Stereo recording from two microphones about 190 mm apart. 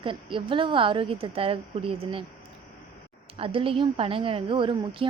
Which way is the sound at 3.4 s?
30° right (ahead or behind).